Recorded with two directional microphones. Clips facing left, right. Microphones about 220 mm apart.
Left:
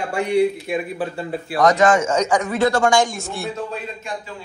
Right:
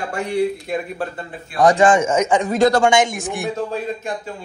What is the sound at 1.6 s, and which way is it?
Speech, 30° right (ahead or behind).